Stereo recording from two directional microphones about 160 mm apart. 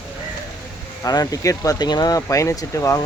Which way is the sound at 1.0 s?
25° left (ahead or behind).